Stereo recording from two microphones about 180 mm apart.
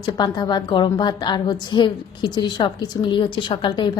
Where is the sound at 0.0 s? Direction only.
25° left (ahead or behind).